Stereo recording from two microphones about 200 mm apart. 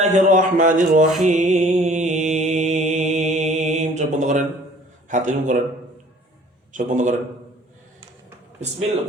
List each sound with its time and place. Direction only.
0.0 s speech: 35° right (ahead or behind)
1.7 s mantra: 35° right (ahead or behind)
5.0 s speech: 40° right (ahead or behind)
6.7 s speech: 40° right (ahead or behind)